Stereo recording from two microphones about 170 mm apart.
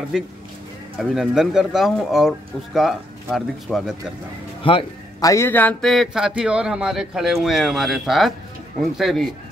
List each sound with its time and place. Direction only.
0.1 s a man's voice: 5° right (ahead or behind)
4.6 s a man's voice: 30° left (ahead or behind)
5.3 s a man's voice: 15° left (ahead or behind)